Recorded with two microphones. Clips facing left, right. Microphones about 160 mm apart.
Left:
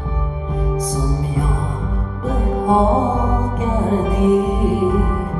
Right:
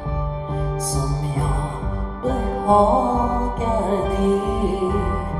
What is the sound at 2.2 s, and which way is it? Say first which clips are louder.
Music: left 1 dB; 30° right (ahead or behind).